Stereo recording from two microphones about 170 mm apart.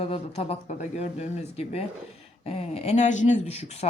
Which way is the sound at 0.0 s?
35° left (ahead or behind).